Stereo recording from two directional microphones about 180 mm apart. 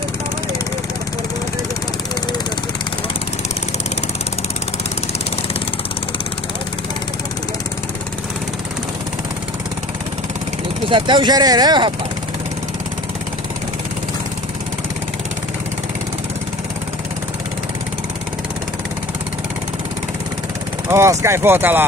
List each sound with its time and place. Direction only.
10.9 s speech: 25° right (ahead or behind)
20.9 s speech: 15° right (ahead or behind)